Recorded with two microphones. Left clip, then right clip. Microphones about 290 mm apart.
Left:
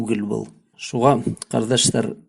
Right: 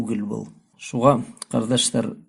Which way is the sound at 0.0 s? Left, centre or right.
Left.